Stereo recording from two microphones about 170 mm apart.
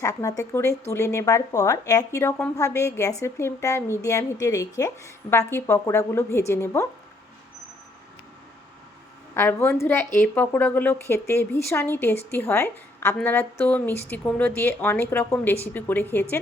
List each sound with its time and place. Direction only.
0.0 s speech: 20° left (ahead or behind)
9.3 s speech: 15° left (ahead or behind)